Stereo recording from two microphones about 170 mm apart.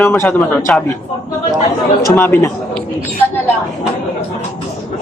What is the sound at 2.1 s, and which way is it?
Speech, 15° left (ahead or behind).